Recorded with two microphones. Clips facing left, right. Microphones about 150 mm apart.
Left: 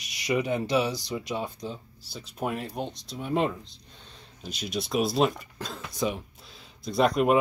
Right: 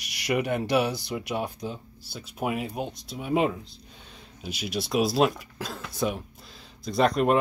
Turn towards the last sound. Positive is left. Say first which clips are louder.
# even
turn(degrees=0)  # may be behind; listen again after turning